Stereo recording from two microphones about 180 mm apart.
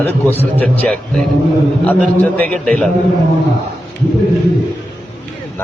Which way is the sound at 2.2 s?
10° left (ahead or behind).